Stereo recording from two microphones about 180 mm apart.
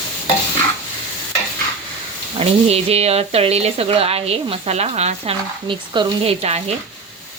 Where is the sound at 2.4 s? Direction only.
35° right (ahead or behind).